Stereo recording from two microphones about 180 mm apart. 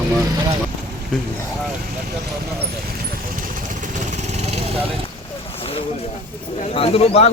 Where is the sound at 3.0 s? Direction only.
50° right (ahead or behind).